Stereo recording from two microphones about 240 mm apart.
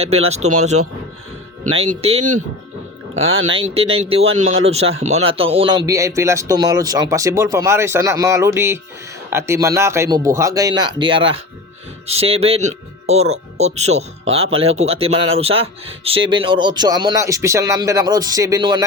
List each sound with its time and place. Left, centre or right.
0.4 s speech: right
1.7 s speech: right
3.5 s speech: right